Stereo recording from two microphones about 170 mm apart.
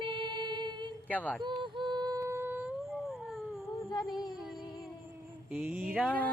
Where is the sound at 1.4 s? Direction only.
30° right (ahead or behind); by 3.2 s 5° right (ahead or behind).